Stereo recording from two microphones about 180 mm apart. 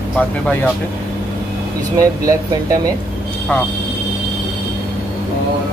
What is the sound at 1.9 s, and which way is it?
Speech, 20° right (ahead or behind).